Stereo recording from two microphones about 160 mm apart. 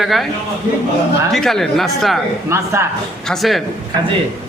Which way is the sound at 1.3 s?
Centre (ahead or behind).